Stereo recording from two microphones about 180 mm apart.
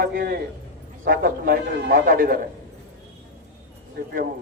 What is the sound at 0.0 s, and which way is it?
A man's voice, 55° right (ahead or behind).